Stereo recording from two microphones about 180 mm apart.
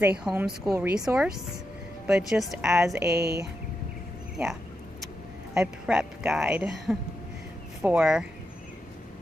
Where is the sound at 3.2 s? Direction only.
65° right (ahead or behind).